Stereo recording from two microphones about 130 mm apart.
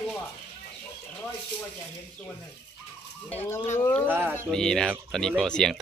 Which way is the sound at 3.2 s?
15° left (ahead or behind).